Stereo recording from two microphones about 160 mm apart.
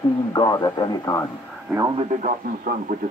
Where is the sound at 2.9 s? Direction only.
60° right (ahead or behind).